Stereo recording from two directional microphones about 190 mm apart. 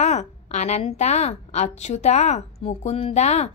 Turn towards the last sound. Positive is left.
turn(degrees=35)  # may be behind; listen again after turning